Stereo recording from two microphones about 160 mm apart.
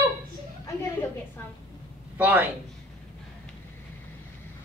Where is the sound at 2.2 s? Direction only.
10° right (ahead or behind).